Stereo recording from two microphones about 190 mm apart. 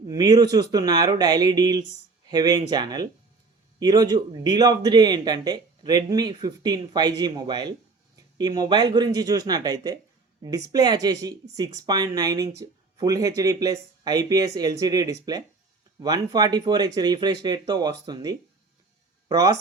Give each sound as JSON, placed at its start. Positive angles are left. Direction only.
{"t": 0.1, "sound": "speech", "side_deg": -20}